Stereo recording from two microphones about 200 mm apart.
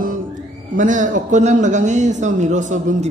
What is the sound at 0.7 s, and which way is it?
A man's voice, 40° right (ahead or behind).